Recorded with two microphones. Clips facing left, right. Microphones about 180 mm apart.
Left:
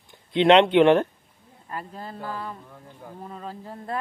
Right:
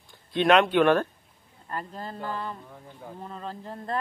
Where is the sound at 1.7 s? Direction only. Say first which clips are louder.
Even; 5° left (ahead or behind).